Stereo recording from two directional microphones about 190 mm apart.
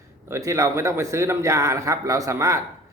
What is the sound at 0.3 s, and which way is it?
A man's voice, 15° right (ahead or behind).